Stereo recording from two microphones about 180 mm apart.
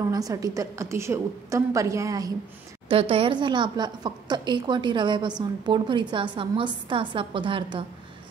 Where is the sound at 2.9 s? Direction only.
30° right (ahead or behind).